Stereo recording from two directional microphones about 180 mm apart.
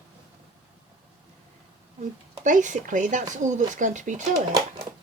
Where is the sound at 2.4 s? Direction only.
45° right (ahead or behind).